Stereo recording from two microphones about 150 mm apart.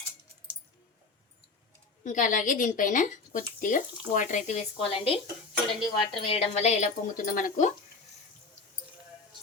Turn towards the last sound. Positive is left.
turn(degrees=65)  # may be behind; listen again after turning